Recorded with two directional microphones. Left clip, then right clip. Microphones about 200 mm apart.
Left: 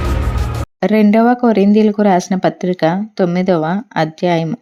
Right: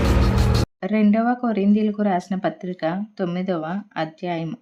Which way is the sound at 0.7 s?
35° left (ahead or behind).